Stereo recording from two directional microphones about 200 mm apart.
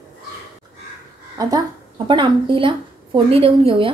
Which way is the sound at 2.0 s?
25° right (ahead or behind).